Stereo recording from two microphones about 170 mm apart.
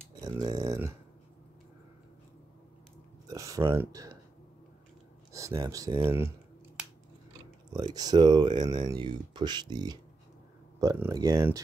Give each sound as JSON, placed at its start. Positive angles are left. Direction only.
{"t": 0.1, "sound": "a sound", "side_deg": -20}
{"t": 3.3, "sound": "speech", "side_deg": -20}
{"t": 5.3, "sound": "speech", "side_deg": -20}
{"t": 7.7, "sound": "speech", "side_deg": -20}